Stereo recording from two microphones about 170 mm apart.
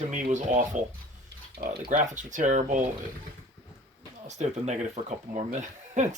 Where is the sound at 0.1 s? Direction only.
45° right (ahead or behind).